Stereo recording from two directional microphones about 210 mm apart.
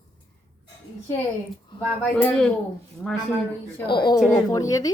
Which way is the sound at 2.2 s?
5° left (ahead or behind).